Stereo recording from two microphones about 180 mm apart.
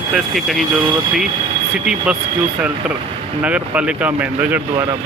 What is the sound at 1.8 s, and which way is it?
Speech, 5° right (ahead or behind).